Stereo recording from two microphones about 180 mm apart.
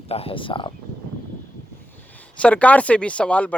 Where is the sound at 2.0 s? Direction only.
10° left (ahead or behind).